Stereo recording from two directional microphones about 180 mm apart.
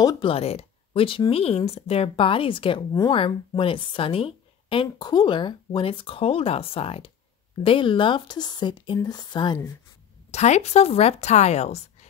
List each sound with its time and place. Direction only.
0.0 s speech: 25° left (ahead or behind)
10.3 s a woman's voice: 40° left (ahead or behind)